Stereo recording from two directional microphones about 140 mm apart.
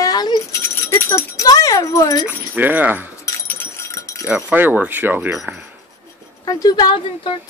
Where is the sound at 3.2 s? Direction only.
20° left (ahead or behind).